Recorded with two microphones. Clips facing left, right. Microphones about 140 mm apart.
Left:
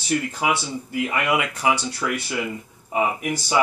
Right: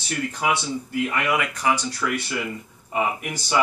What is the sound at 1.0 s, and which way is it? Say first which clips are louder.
Speech: left 2 dB; 20° left (ahead or behind).